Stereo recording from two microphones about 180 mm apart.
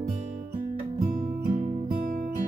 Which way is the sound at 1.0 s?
50° right (ahead or behind).